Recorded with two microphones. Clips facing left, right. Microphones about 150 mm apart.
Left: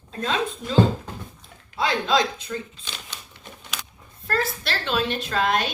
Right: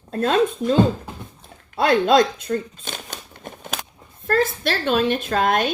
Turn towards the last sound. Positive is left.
turn(degrees=-50)  # may be behind; listen again after turning